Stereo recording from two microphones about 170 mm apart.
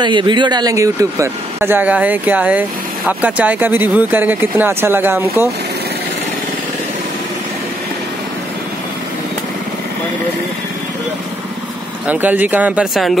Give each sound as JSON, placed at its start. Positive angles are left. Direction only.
{"t": 0.0, "sound": "speech", "side_deg": -25}
{"t": 12.1, "sound": "speech", "side_deg": -10}